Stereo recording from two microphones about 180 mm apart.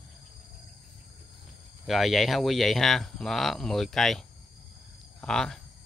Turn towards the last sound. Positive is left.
turn(degrees=5)  # may be behind; listen again after turning